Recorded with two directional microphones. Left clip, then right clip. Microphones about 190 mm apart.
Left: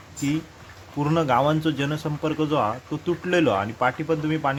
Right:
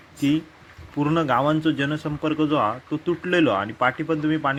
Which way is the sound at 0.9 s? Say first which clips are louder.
Even; 10° right (ahead or behind).